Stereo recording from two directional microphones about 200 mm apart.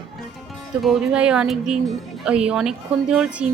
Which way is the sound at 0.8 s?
Centre (ahead or behind).